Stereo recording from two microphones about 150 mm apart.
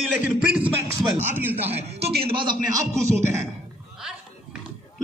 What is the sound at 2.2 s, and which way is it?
Speech, 35° right (ahead or behind).